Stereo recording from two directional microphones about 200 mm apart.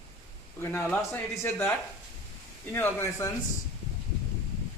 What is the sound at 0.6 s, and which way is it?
Speech, 10° left (ahead or behind).